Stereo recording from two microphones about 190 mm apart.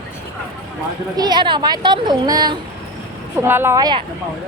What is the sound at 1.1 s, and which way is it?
Speech, 20° right (ahead or behind).